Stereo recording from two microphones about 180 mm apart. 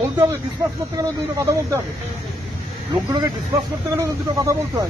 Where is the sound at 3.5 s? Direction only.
15° right (ahead or behind).